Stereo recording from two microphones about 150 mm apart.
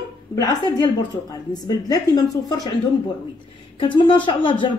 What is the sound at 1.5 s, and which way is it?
A woman's voice, 25° left (ahead or behind).